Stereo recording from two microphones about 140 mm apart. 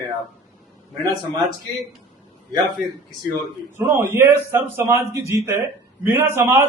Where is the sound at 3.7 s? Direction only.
15° right (ahead or behind).